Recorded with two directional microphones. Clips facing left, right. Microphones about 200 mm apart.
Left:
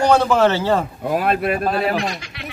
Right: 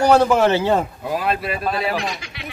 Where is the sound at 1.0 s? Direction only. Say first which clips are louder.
Left 4 dB; 50° left (ahead or behind).